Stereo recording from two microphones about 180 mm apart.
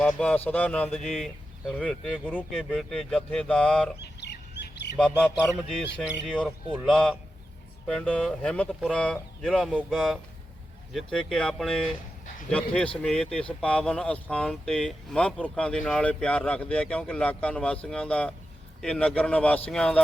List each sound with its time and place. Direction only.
0.0 s speech: 5° left (ahead or behind)
4.0 s bird: 70° left (ahead or behind)
4.9 s speech: 5° left (ahead or behind)
6.8 s speech: 5° left (ahead or behind)